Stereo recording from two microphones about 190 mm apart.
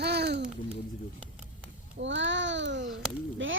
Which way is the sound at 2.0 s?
70° right (ahead or behind).